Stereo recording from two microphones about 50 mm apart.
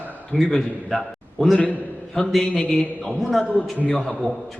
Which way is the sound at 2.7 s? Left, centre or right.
Left.